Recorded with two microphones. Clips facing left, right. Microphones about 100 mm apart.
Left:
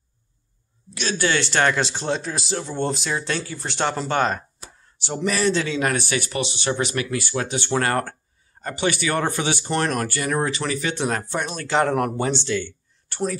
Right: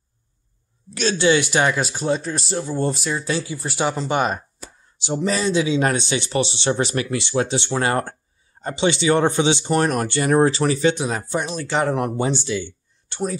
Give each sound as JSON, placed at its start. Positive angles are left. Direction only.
{"t": 1.1, "sound": "speech", "side_deg": -15}
{"t": 5.8, "sound": "speech", "side_deg": -25}
{"t": 11.0, "sound": "speech", "side_deg": -10}
{"t": 11.5, "sound": "speech", "side_deg": 0}